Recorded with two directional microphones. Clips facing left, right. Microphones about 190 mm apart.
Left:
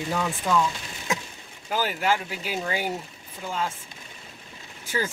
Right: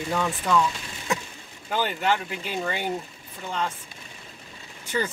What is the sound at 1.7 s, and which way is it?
Speech, 5° left (ahead or behind).